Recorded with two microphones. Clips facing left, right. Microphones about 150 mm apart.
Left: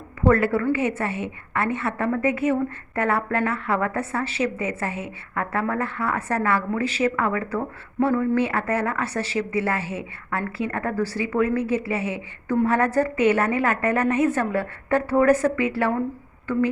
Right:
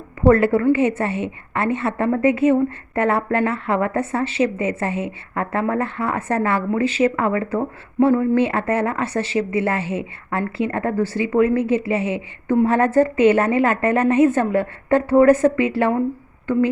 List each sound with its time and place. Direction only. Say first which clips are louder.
0.2 s a woman's voice: right 5 dB; 25° right (ahead or behind)